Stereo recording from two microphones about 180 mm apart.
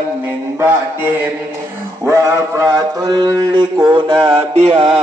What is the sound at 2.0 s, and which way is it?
Mantra, 15° right (ahead or behind).